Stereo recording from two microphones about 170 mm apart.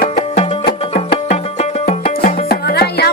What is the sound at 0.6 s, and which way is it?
Music, 70° left (ahead or behind).